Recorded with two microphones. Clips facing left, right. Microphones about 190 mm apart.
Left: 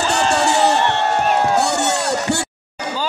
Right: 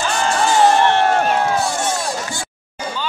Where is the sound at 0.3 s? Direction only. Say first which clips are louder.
Right 3 dB; 70° left (ahead or behind).